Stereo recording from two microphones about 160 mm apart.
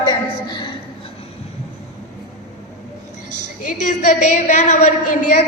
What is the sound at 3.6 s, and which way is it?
A woman's voice, 50° left (ahead or behind).